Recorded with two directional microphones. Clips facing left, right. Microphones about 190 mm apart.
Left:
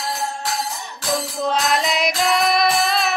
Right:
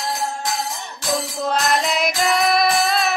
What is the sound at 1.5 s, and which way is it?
Music, centre (ahead or behind).